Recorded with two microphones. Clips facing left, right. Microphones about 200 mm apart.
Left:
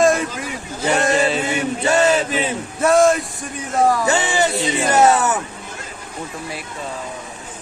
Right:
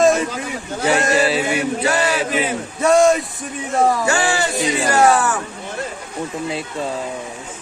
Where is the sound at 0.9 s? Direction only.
Centre (ahead or behind).